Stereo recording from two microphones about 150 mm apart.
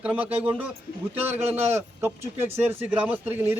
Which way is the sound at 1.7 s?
15° right (ahead or behind).